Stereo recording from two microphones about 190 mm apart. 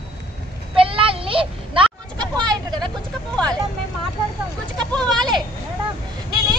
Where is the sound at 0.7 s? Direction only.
30° right (ahead or behind).